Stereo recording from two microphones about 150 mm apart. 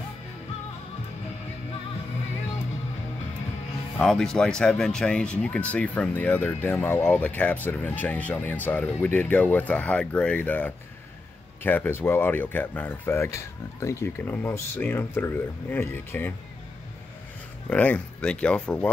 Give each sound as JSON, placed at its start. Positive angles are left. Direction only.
{"t": 4.0, "sound": "speech", "side_deg": 5}
{"t": 17.6, "sound": "speech", "side_deg": 10}